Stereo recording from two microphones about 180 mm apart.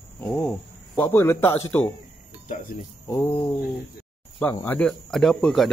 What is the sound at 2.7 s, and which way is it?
Speech, 45° left (ahead or behind).